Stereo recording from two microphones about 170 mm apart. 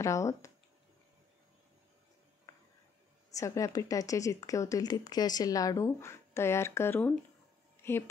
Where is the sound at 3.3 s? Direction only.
20° left (ahead or behind).